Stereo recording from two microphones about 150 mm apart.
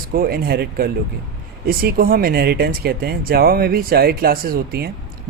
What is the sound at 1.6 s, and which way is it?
A man's voice, 75° right (ahead or behind).